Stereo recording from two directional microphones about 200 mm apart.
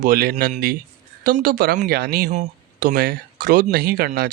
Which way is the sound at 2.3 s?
35° right (ahead or behind).